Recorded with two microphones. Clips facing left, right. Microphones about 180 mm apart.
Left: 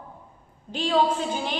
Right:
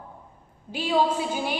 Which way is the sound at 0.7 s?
10° right (ahead or behind).